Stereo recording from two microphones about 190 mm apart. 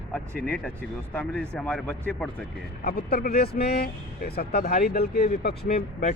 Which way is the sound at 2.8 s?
55° left (ahead or behind).